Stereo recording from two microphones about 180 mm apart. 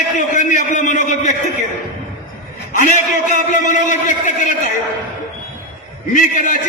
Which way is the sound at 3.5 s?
45° left (ahead or behind).